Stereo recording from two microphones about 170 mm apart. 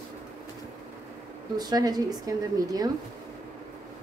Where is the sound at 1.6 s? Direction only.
25° right (ahead or behind).